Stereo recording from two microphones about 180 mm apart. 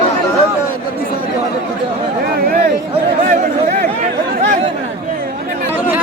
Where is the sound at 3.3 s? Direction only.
50° right (ahead or behind).